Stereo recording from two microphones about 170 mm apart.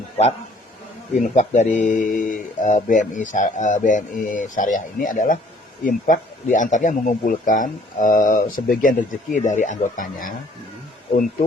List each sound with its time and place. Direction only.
1.4 s speech: 45° left (ahead or behind)